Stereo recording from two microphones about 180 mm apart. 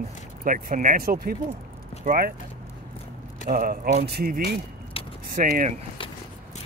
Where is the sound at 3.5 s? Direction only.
50° right (ahead or behind).